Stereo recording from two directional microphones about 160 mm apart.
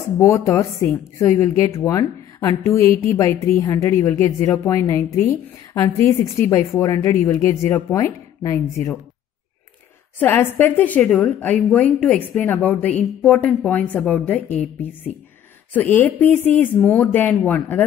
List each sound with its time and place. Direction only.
0.2 s a woman's voice: 20° left (ahead or behind)
10.1 s a woman's voice: 10° left (ahead or behind)